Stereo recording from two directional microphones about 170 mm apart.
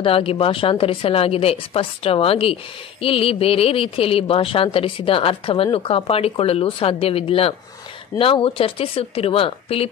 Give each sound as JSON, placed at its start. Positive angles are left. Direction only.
{"t": 0.0, "sound": "speech", "side_deg": 30}